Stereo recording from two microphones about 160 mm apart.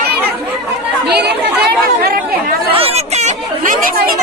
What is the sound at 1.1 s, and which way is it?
Chatter, 90° right.